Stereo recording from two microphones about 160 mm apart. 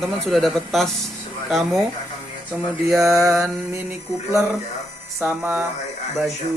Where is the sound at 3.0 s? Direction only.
20° right (ahead or behind).